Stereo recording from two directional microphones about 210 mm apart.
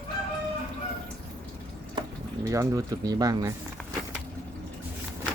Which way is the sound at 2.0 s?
15° right (ahead or behind).